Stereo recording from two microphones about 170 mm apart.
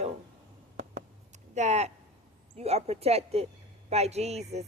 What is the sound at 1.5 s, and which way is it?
Speech, 40° right (ahead or behind).